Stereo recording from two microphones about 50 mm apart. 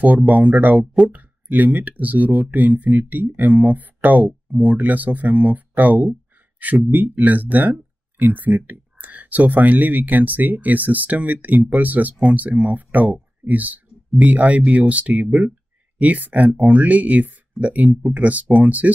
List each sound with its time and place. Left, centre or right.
0.0 s speech: right